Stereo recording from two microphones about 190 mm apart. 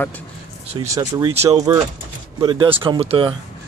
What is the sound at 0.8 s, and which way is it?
Speech, 15° right (ahead or behind).